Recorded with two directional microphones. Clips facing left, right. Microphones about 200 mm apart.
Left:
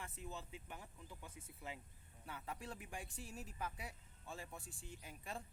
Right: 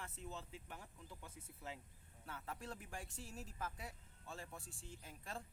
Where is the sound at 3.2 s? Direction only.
25° right (ahead or behind).